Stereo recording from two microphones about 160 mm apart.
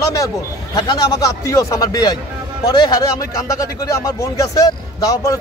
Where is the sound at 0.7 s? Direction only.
25° left (ahead or behind).